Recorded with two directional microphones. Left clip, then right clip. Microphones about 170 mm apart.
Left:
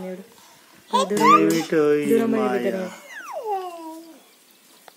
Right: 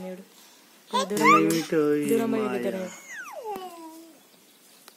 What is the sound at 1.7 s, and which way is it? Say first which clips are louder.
Speech: left 5 dB; 35° right (ahead or behind).